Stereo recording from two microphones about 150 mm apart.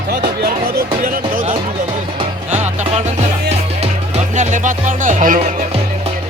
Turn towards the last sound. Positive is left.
turn(degrees=-60)  # may be behind; listen again after turning